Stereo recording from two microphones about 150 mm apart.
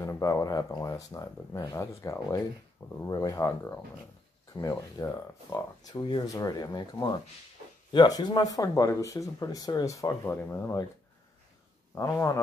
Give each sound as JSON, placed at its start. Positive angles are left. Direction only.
{"t": 0.0, "sound": "speech", "side_deg": 20}
{"t": 5.9, "sound": "speech", "side_deg": 30}
{"t": 11.9, "sound": "speech", "side_deg": 20}